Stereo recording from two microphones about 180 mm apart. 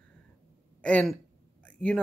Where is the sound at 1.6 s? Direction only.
5° left (ahead or behind).